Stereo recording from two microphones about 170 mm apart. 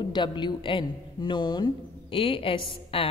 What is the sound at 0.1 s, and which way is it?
A woman's voice, 25° left (ahead or behind).